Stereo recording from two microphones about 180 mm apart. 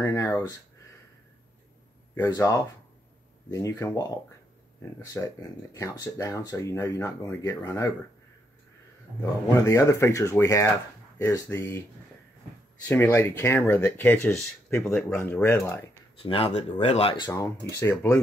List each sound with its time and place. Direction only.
0.0 s speech: 15° left (ahead or behind)
2.1 s speech: 20° left (ahead or behind)
9.2 s speech: 15° left (ahead or behind)
12.8 s speech: 15° left (ahead or behind)
16.2 s speech: 30° left (ahead or behind); by 18.2 s 15° left (ahead or behind)